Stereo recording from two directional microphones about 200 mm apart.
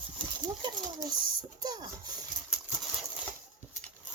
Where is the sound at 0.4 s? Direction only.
20° right (ahead or behind).